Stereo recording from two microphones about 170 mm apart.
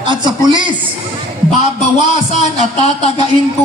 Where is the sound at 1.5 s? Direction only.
40° left (ahead or behind).